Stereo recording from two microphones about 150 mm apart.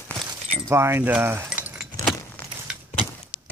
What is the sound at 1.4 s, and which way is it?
Keys jangling, 10° right (ahead or behind).